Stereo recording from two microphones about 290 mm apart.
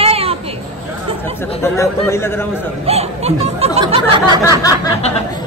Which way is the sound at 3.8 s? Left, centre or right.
Centre.